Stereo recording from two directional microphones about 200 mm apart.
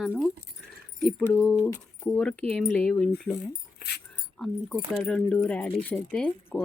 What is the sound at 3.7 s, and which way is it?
Dog, 55° left (ahead or behind).